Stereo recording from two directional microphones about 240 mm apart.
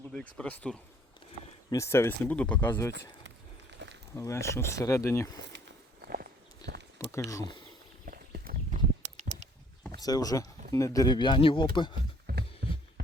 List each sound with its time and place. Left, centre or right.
0.1 s speech: centre
4.1 s speech: centre
5.4 s walk: right
6.6 s a sound: centre
7.0 s speech: centre
8.0 s horse: right
10.0 s speech: centre
12.3 s music: right